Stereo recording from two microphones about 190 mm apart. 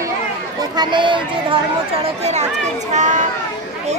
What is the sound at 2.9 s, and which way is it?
Speech, 40° right (ahead or behind).